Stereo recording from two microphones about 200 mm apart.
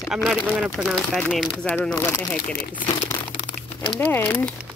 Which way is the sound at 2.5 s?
40° left (ahead or behind).